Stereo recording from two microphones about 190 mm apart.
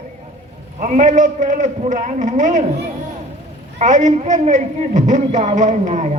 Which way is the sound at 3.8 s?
40° right (ahead or behind).